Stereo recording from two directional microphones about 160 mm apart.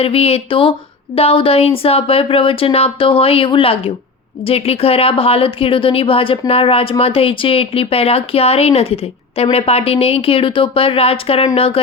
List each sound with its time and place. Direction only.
0.0 s speech: 35° left (ahead or behind)